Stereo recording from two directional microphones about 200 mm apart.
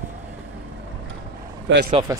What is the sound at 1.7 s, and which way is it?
Speech, 65° right (ahead or behind).